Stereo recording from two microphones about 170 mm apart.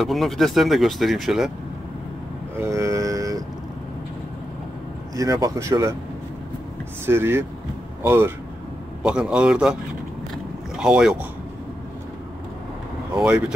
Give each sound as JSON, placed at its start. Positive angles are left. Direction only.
{"t": 0.0, "sound": "speech", "side_deg": 0}
{"t": 2.5, "sound": "cattle", "side_deg": -15}
{"t": 5.1, "sound": "speech", "side_deg": -20}
{"t": 7.1, "sound": "speech", "side_deg": -15}
{"t": 10.3, "sound": "boat", "side_deg": -5}
{"t": 13.1, "sound": "speech", "side_deg": -5}